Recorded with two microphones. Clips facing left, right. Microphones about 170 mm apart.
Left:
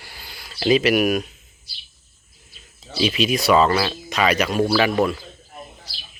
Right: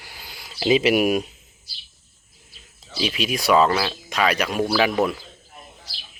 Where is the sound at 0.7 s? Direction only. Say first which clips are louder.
Left 1 dB; 25° right (ahead or behind).